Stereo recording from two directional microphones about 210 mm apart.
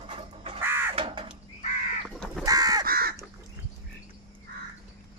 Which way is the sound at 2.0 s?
Centre (ahead or behind).